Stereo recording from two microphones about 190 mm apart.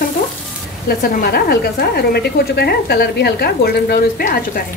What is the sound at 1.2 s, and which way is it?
A woman's voice, 55° left (ahead or behind).